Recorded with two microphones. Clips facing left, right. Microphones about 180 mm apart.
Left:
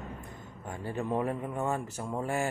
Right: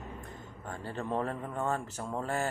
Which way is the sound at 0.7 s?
15° left (ahead or behind).